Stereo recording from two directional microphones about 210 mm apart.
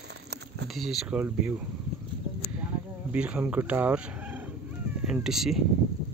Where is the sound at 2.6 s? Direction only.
5° right (ahead or behind).